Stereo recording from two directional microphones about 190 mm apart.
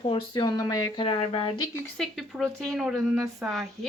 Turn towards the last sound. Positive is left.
turn(degrees=0)  # may be behind; listen again after turning